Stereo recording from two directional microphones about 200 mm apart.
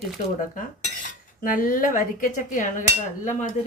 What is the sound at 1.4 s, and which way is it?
Speech, 45° left (ahead or behind).